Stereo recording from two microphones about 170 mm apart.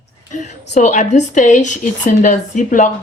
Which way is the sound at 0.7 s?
45° left (ahead or behind).